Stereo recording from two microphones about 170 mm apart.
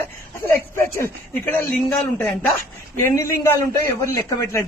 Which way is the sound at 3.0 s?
15° left (ahead or behind).